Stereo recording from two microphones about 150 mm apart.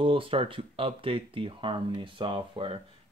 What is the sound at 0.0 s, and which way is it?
Speech, 35° right (ahead or behind).